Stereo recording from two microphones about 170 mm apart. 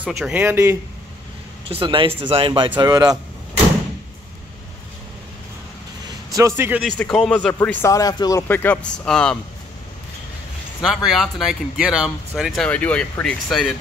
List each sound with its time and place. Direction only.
0.0 s speech: 10° right (ahead or behind)
1.7 s a man's voice: 30° right (ahead or behind)
6.0 s a sound: 20° right (ahead or behind)
7.0 s speech: 5° left (ahead or behind)
11.1 s speech: centre (ahead or behind)